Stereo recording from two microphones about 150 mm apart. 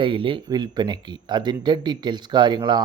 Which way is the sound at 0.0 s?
35° right (ahead or behind).